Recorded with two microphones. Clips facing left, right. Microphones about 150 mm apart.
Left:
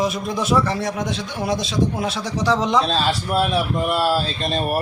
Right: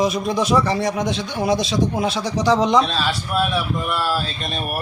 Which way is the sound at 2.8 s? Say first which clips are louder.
Left 2 dB; 30° left (ahead or behind).